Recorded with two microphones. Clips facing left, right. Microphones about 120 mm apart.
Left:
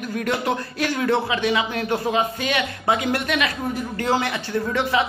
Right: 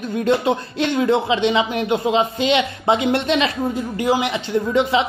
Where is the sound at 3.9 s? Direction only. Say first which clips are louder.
Right 3 dB; 15° right (ahead or behind).